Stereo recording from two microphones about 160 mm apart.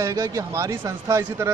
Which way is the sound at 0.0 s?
20° right (ahead or behind).